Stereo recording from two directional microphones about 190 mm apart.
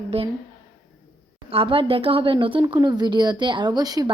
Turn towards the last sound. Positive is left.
turn(degrees=-20)  # may be behind; listen again after turning